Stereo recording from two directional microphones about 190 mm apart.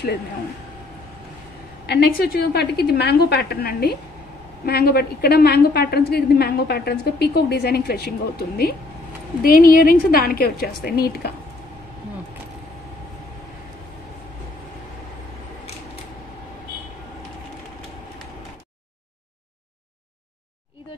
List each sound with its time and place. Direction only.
1.9 s a woman's voice: 55° left (ahead or behind)